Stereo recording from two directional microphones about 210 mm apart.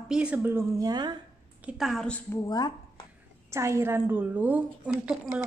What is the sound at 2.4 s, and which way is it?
Speech, 20° left (ahead or behind).